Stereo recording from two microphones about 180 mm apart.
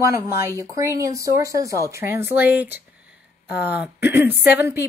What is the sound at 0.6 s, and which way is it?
A woman's voice, 15° right (ahead or behind).